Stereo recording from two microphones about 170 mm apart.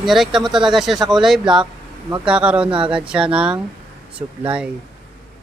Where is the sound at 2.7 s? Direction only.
30° right (ahead or behind).